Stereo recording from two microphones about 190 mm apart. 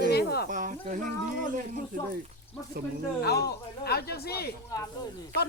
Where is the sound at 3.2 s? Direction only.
55° left (ahead or behind).